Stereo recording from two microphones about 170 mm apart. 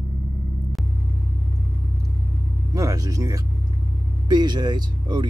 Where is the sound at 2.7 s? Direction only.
20° right (ahead or behind).